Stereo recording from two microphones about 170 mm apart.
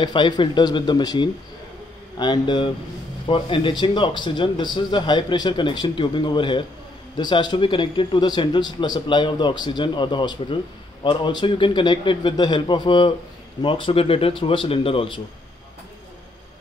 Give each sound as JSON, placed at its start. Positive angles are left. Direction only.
{"t": 0.0, "sound": "a man's voice", "side_deg": 25}